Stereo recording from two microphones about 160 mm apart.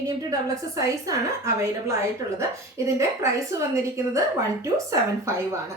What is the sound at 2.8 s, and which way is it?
A woman's voice, 20° right (ahead or behind).